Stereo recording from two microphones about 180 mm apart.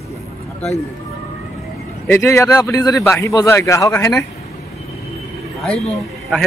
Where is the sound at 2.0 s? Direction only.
10° left (ahead or behind).